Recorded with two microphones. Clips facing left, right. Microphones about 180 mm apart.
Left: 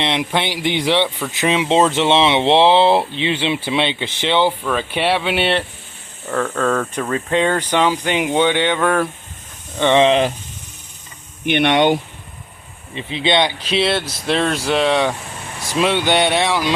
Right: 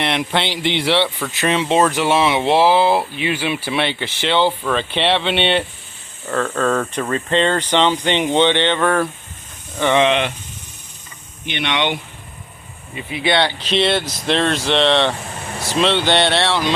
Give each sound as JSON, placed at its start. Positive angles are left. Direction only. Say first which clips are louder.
{"t": 0.0, "sound": "speech", "louder": "even", "side_deg": 15}
{"t": 9.7, "sound": "speech", "louder": "left 2 dB", "side_deg": 25}
{"t": 11.4, "sound": "speech", "louder": "left 7 dB", "side_deg": 55}
{"t": 12.9, "sound": "speech", "louder": "left 1 dB", "side_deg": 25}